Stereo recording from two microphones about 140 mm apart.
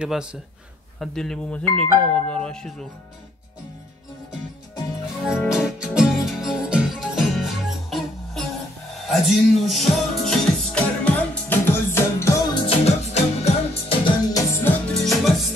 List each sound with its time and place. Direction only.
0.0 s speech: 5° right (ahead or behind)
5.5 s music: 5° right (ahead or behind); by 12.4 s 20° left (ahead or behind)
12.5 s music: 45° left (ahead or behind)
14.0 s music: 25° left (ahead or behind)
14.9 s music: centre (ahead or behind)